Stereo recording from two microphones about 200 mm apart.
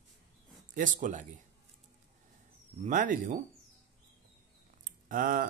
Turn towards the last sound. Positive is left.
turn(degrees=-45)  # may be behind; listen again after turning